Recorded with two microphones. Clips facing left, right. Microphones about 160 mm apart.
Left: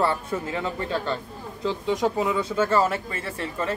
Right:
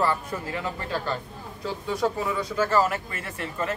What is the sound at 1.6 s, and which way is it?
Speech, 20° left (ahead or behind).